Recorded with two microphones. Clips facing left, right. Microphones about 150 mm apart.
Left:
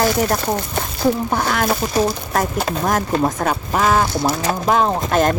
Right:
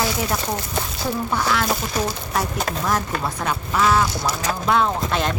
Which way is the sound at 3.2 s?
45° left (ahead or behind).